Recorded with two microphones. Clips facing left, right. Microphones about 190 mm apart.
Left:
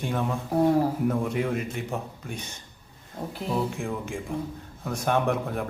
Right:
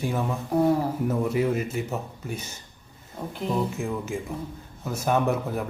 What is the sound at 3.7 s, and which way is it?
Speech, 5° right (ahead or behind).